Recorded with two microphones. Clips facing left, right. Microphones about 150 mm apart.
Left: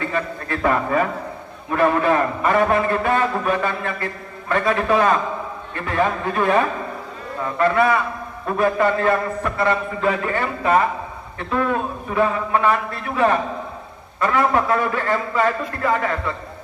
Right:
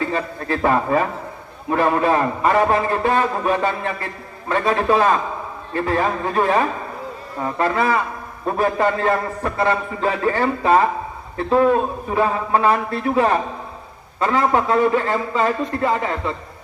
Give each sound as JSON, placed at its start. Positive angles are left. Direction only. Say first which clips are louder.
{"t": 0.1, "sound": "a man's voice", "louder": "right 2 dB", "side_deg": -30}
{"t": 7.6, "sound": "a man's voice", "louder": "left 2 dB", "side_deg": -30}